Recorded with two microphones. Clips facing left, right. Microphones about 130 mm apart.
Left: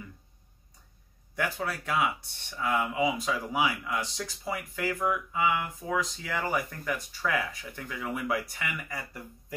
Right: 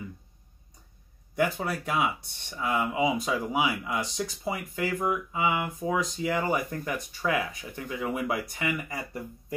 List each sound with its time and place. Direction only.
1.3 s speech: 20° right (ahead or behind)